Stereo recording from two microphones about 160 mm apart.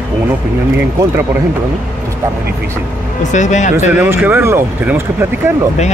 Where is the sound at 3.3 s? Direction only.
50° left (ahead or behind).